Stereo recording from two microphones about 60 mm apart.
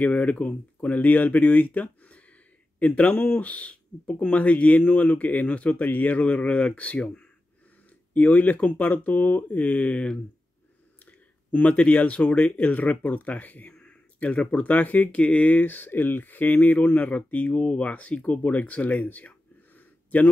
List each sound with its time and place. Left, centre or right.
0.0 s speech: left